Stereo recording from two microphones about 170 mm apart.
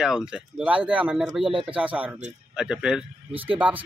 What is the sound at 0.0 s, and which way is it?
A man's voice, 5° right (ahead or behind).